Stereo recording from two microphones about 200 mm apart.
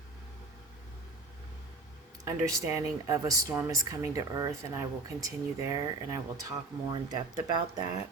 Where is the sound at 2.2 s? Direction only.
15° right (ahead or behind).